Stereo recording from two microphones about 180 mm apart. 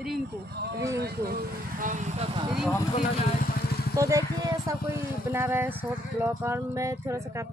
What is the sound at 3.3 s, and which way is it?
Vehicle, 55° left (ahead or behind).